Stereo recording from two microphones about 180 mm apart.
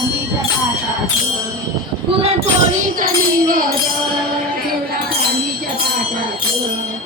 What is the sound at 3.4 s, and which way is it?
Music, 50° right (ahead or behind).